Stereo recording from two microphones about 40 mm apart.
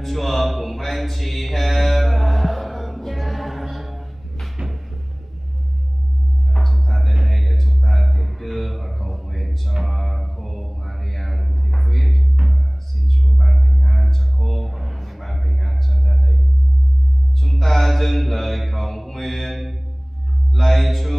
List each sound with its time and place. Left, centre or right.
0.0 s mantra: centre
6.5 s music: centre
7.2 s a sound: centre
9.8 s mantra: centre
12.4 s music: right
13.4 s a sound: centre
17.4 s mantra: centre
20.5 s music: centre